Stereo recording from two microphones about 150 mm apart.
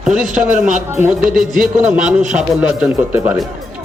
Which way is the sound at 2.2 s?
55° right (ahead or behind).